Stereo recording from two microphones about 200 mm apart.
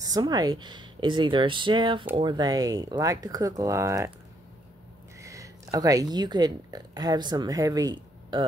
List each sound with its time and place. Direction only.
0.0 s speech: 20° right (ahead or behind)
5.2 s speech: 15° right (ahead or behind)